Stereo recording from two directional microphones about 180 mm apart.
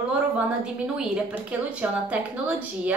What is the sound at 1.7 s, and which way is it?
Speech, 10° right (ahead or behind).